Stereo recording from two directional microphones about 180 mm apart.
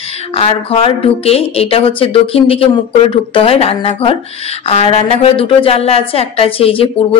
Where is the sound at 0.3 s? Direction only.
30° left (ahead or behind).